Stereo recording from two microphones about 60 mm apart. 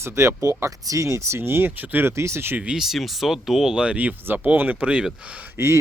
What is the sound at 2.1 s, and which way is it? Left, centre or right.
Speech, right.